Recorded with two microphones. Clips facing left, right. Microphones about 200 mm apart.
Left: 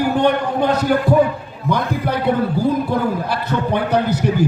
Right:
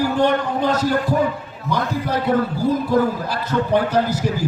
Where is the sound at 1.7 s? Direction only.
60° left (ahead or behind).